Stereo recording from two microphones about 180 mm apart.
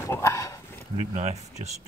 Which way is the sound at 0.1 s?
15° left (ahead or behind).